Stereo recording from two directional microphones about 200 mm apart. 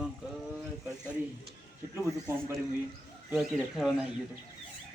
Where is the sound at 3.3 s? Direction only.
Centre (ahead or behind).